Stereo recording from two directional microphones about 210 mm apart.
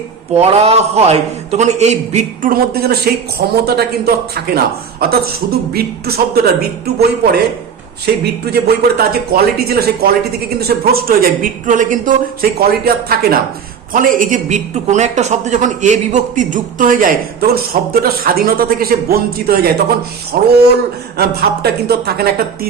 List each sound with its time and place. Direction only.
0.3 s a man's voice: 30° right (ahead or behind); by 6.9 s 50° right (ahead or behind)
8.0 s a man's voice: 50° right (ahead or behind)